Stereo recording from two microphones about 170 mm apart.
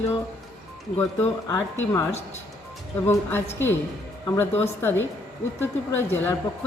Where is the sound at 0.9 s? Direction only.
15° left (ahead or behind).